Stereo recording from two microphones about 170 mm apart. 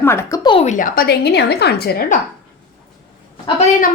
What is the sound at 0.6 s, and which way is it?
A woman's voice, 50° left (ahead or behind).